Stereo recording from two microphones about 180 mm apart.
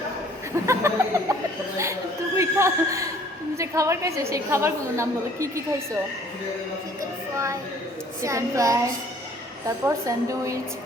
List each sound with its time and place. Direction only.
0.7 s a sound: 15° right (ahead or behind)
1.8 s chuckle: 15° right (ahead or behind)
3.6 s a woman's voice: 15° right (ahead or behind)
8.2 s a woman's voice: 15° right (ahead or behind)
9.8 s a woman's voice: 15° right (ahead or behind)